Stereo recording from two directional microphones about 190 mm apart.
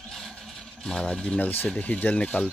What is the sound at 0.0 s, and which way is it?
Vehicle, centre (ahead or behind).